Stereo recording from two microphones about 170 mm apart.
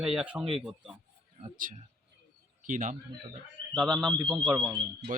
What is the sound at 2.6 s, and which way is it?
Speech, 50° right (ahead or behind).